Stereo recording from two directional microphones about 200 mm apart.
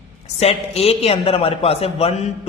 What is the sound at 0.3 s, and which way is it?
A man's voice, 30° left (ahead or behind).